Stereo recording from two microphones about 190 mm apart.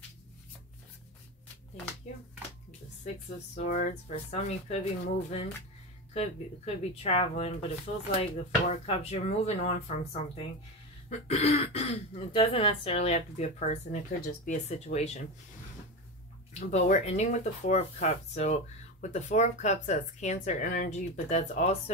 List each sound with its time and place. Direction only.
3.5 s speech: 40° left (ahead or behind)
16.5 s speech: 40° left (ahead or behind)